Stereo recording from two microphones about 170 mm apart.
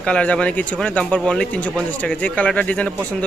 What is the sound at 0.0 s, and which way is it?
A man's voice, 5° left (ahead or behind).